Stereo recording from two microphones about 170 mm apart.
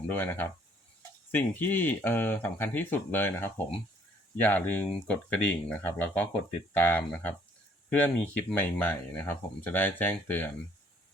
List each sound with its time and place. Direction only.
0.1 s speech: 10° left (ahead or behind)